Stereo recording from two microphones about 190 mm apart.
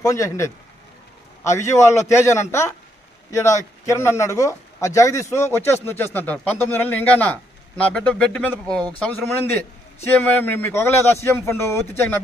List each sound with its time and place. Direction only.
0.0 s speech: 15° left (ahead or behind)